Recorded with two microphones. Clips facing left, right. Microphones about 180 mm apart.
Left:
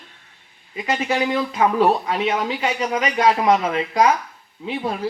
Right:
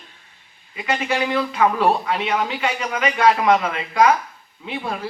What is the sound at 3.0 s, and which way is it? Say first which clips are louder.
Speech: right 2 dB; 35° left (ahead or behind).